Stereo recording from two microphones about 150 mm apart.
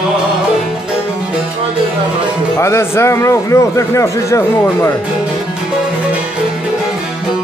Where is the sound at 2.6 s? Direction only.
15° left (ahead or behind).